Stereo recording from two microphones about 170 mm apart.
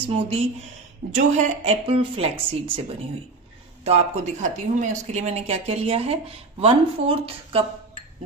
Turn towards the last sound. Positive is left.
turn(degrees=-35)  # may be behind; listen again after turning